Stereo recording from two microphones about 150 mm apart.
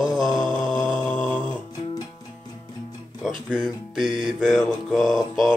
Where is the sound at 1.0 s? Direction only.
15° left (ahead or behind).